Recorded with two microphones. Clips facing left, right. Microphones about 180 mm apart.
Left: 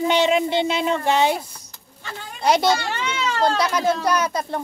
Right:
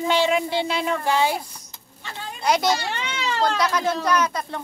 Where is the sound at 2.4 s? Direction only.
30° left (ahead or behind).